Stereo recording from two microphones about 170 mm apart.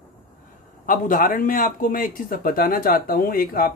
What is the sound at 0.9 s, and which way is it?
Speech, 50° left (ahead or behind).